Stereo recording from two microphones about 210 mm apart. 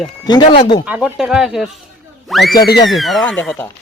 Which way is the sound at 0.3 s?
25° left (ahead or behind).